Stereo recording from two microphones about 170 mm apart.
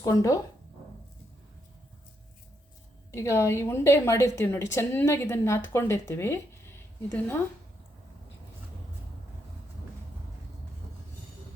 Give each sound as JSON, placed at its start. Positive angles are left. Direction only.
{"t": 0.0, "sound": "speech", "side_deg": 20}
{"t": 3.1, "sound": "a woman's voice", "side_deg": 15}